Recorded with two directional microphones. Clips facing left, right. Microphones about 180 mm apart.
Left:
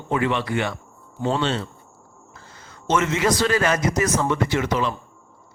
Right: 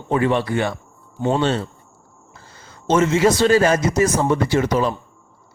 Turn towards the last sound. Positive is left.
turn(degrees=-40)  # may be behind; listen again after turning